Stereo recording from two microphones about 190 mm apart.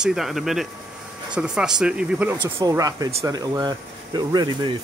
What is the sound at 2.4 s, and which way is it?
Speech, 20° right (ahead or behind).